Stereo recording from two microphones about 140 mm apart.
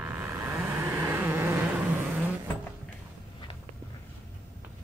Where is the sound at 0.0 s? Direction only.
15° right (ahead or behind).